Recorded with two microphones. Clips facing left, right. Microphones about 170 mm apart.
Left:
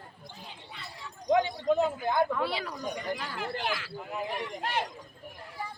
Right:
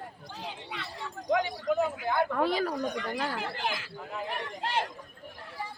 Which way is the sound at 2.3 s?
45° right (ahead or behind).